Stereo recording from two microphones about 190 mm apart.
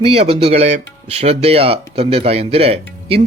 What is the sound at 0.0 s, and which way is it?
Speech, 30° right (ahead or behind).